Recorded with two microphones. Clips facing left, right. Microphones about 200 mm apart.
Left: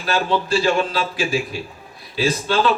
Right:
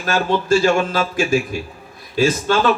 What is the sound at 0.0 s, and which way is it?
A man's voice, 45° right (ahead or behind).